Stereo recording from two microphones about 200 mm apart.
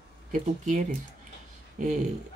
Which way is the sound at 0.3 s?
40° right (ahead or behind).